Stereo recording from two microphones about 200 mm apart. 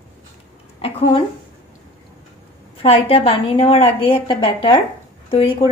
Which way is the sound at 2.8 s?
30° left (ahead or behind).